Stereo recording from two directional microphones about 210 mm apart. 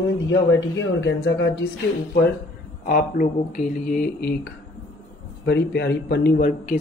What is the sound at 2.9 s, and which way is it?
Speech, 40° left (ahead or behind).